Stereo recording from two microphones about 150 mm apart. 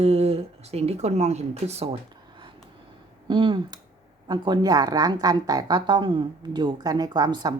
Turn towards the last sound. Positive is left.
turn(degrees=-30)  # may be behind; listen again after turning